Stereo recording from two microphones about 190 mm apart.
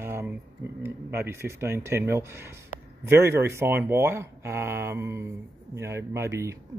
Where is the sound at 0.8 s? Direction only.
10° right (ahead or behind).